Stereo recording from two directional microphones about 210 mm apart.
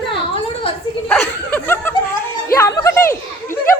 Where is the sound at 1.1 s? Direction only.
10° left (ahead or behind).